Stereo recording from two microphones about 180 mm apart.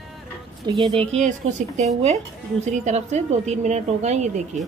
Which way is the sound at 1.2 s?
40° right (ahead or behind).